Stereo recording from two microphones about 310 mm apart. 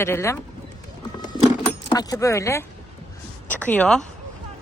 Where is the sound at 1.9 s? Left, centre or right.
Centre.